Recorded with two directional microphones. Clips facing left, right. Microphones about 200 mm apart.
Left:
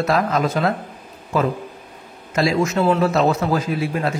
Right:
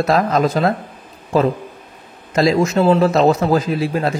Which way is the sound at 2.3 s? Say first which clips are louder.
Right 4 dB; 40° right (ahead or behind).